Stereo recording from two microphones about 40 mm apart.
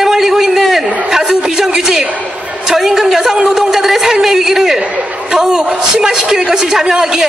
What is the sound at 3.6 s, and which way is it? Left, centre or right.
A man's voice, centre.